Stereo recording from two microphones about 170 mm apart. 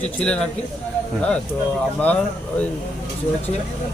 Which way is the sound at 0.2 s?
5° left (ahead or behind).